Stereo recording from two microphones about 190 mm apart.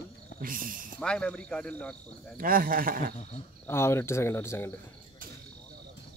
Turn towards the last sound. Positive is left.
turn(degrees=15)  # may be behind; listen again after turning